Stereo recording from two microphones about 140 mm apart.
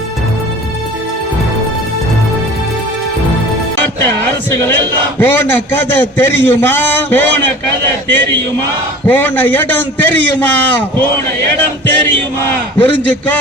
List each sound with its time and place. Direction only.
3.8 s music: 15° left (ahead or behind)
5.2 s a man's voice: 15° left (ahead or behind)
9.0 s a man's voice: 15° left (ahead or behind)